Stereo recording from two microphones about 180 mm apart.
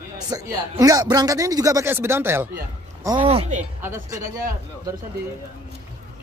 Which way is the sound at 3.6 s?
10° right (ahead or behind).